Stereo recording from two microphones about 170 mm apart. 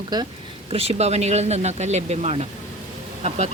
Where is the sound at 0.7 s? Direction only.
35° right (ahead or behind).